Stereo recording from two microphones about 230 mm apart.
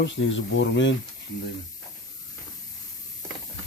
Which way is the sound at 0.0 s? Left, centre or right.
Left.